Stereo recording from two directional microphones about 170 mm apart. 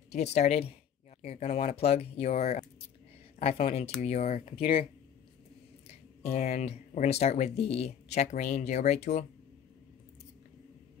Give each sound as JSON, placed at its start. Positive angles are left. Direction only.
{"t": 0.1, "sound": "speech", "side_deg": 40}
{"t": 5.9, "sound": "speech", "side_deg": 40}